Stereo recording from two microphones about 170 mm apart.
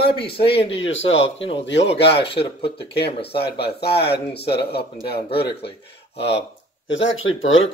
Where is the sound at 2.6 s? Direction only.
75° left (ahead or behind).